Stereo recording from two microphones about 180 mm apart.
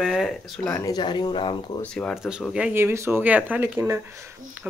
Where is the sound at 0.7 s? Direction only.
10° left (ahead or behind).